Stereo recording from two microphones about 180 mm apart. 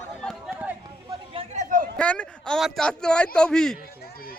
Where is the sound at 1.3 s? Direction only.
40° right (ahead or behind).